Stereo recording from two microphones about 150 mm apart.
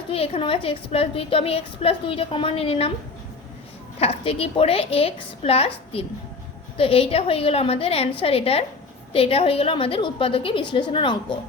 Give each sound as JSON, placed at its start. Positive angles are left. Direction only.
{"t": 0.1, "sound": "a woman's voice", "side_deg": 40}
{"t": 4.0, "sound": "a woman's voice", "side_deg": 40}